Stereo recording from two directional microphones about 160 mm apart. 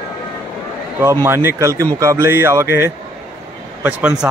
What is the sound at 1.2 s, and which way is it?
Speech, 15° right (ahead or behind).